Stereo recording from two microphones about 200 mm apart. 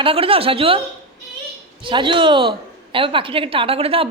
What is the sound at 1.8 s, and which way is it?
A woman's voice, 25° right (ahead or behind).